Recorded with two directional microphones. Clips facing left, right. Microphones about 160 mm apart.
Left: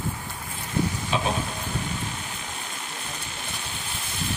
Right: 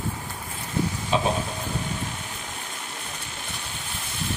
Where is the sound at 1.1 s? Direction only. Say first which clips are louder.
Right 4 dB; 35° right (ahead or behind).